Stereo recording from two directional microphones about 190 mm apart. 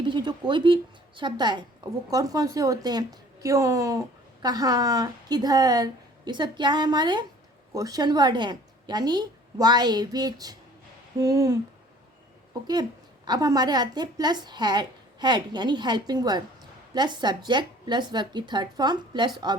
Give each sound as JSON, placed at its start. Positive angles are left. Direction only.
{"t": 0.0, "sound": "a woman's voice", "side_deg": -25}
{"t": 11.2, "sound": "a sound", "side_deg": -15}
{"t": 13.2, "sound": "a woman's voice", "side_deg": -20}